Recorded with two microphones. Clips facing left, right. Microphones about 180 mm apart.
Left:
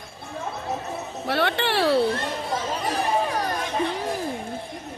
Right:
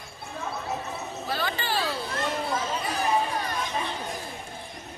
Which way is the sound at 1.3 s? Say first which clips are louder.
Left 7 dB; 70° left (ahead or behind).